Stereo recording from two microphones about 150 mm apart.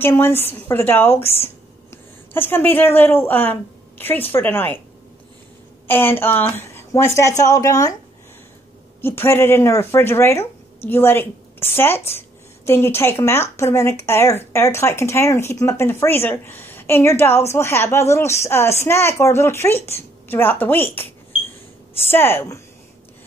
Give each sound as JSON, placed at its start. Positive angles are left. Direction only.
{"t": 0.0, "sound": "speech", "side_deg": 15}
{"t": 2.3, "sound": "speech", "side_deg": 15}
{"t": 5.9, "sound": "a woman's voice", "side_deg": 15}
{"t": 9.0, "sound": "speech", "side_deg": 15}
{"t": 22.1, "sound": "speech", "side_deg": 15}